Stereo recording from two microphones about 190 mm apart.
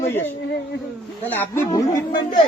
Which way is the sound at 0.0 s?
15° left (ahead or behind).